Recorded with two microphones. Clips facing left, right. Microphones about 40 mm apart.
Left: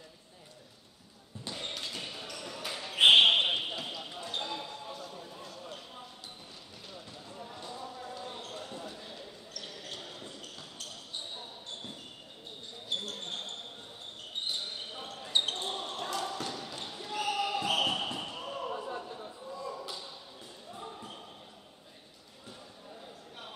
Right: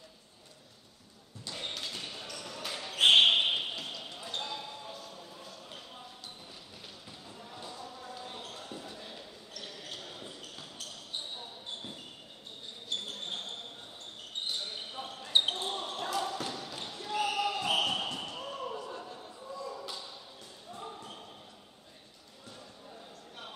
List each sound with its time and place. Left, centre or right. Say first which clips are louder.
1.5 s basketball bounce: even; centre
7.2 s basketball bounce: left 1 dB; centre
13.1 s a sound: even; centre
14.4 s basketball bounce: even; centre
18.8 s a sound: left 3 dB; centre
20.7 s basketball bounce: right 1 dB; centre